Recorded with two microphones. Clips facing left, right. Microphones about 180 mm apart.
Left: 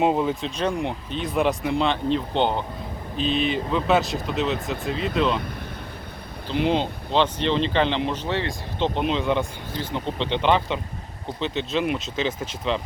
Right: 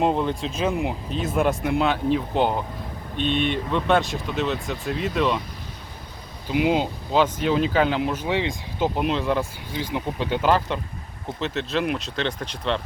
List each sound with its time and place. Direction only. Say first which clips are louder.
0.0 s speech: left 1 dB; 5° left (ahead or behind)
6.5 s speech: right 1 dB; 5° right (ahead or behind)
9.0 s speech: left 1 dB; centre (ahead or behind)